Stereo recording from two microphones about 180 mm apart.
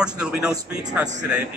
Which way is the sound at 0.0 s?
5° right (ahead or behind).